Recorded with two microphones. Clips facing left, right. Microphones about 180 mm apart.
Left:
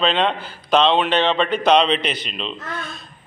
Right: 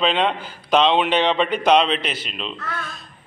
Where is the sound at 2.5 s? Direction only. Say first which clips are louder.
Even; 20° left (ahead or behind).